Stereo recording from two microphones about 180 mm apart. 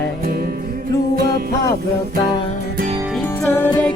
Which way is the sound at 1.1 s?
60° right (ahead or behind).